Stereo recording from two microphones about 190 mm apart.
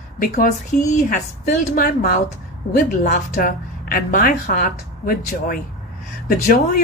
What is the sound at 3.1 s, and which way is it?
A woman's voice, 45° left (ahead or behind).